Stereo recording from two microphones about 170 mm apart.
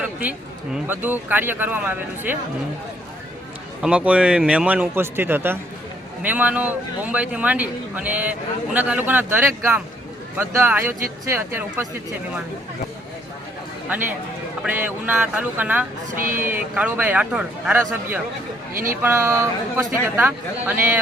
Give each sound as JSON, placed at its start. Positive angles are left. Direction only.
{"t": 0.0, "sound": "a man's voice", "side_deg": -5}
{"t": 3.8, "sound": "a man's voice", "side_deg": -5}
{"t": 13.8, "sound": "a man's voice", "side_deg": -10}
{"t": 16.1, "sound": "speech", "side_deg": -55}
{"t": 16.5, "sound": "a man's voice", "side_deg": -10}